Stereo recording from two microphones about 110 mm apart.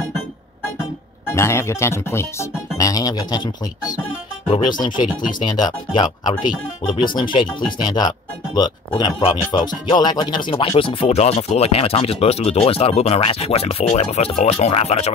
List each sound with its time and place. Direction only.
1.3 s speech: 25° left (ahead or behind); by 11.1 s 55° left (ahead or behind)
11.1 s speech: 80° left